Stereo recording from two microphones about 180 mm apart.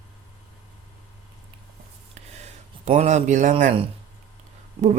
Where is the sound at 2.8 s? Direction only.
40° right (ahead or behind).